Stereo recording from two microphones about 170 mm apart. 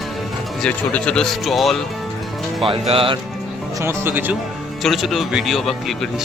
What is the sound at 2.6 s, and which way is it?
Speech, 35° right (ahead or behind).